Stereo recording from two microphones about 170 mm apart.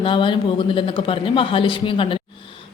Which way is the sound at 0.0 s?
30° left (ahead or behind).